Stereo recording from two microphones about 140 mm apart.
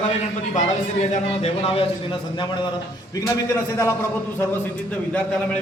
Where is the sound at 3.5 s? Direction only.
20° left (ahead or behind).